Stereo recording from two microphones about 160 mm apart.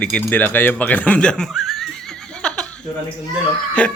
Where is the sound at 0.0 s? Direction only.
10° left (ahead or behind).